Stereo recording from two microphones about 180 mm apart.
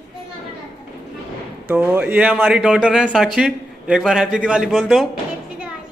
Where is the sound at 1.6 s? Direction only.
10° right (ahead or behind).